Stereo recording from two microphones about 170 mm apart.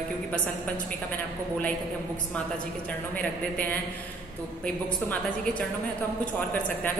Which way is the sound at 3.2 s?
10° left (ahead or behind).